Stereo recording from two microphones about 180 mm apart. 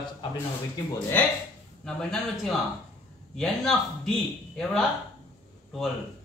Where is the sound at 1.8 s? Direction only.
5° left (ahead or behind).